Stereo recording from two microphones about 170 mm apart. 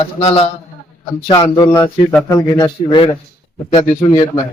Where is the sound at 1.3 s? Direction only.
25° left (ahead or behind).